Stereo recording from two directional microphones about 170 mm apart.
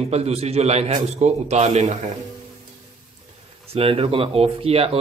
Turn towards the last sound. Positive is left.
turn(degrees=-35)  # may be behind; listen again after turning